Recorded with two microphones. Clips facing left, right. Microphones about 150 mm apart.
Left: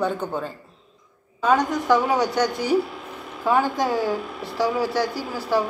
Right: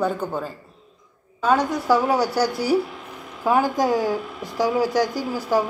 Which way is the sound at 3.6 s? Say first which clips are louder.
Right 2 dB; 40° right (ahead or behind).